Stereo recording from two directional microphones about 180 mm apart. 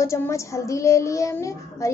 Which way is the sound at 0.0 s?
15° left (ahead or behind).